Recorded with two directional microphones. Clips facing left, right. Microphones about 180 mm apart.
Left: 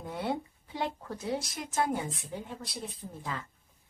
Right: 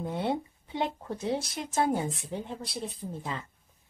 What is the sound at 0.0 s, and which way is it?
Speech, 25° right (ahead or behind).